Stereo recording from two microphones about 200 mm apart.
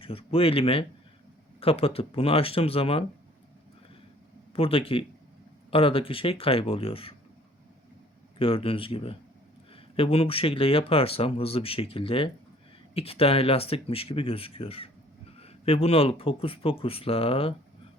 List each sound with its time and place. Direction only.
0.0 s speech: 30° left (ahead or behind)
4.5 s speech: 30° left (ahead or behind)
8.4 s speech: 25° left (ahead or behind)